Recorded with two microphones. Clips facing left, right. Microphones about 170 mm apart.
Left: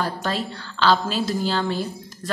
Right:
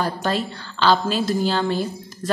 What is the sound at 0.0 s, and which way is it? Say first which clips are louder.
A woman's voice: right 3 dB; centre (ahead or behind).